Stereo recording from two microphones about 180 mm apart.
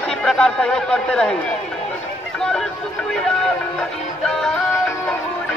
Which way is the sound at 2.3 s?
5° left (ahead or behind).